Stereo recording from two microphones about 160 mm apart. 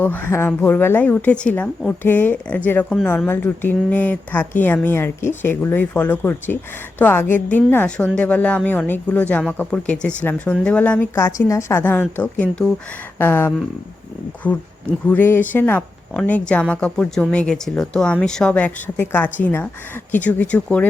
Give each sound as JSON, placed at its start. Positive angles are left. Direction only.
{"t": 0.0, "sound": "a woman's voice", "side_deg": 10}